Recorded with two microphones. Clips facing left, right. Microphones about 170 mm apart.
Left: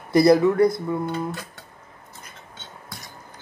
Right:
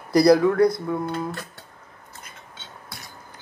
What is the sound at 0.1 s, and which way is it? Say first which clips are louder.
Speech: even; 5° left (ahead or behind).